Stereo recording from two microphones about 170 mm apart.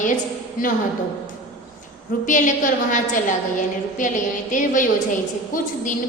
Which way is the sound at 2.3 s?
50° left (ahead or behind).